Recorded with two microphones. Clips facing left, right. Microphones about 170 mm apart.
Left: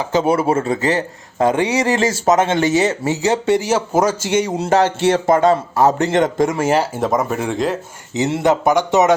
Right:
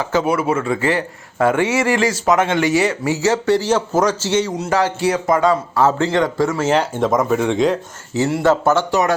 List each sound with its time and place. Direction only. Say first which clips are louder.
0.1 s a man's voice: left 3 dB; 25° left (ahead or behind)
0.9 s a man's voice: left 1 dB; 20° left (ahead or behind)
2.2 s a man's voice: left 2 dB; 40° left (ahead or behind)
2.5 s a man's voice: left 1 dB; 25° left (ahead or behind)
3.7 s speech: even; 10° left (ahead or behind)
4.5 s a man's voice: left 3 dB; 25° left (ahead or behind); by 7.8 s centre (ahead or behind)
8.1 s a man's voice: even; 20° left (ahead or behind)